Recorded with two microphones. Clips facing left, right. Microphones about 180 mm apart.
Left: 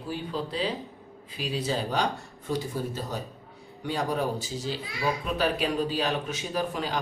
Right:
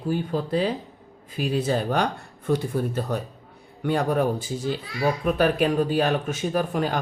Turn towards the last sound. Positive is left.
turn(degrees=-50)  # may be behind; listen again after turning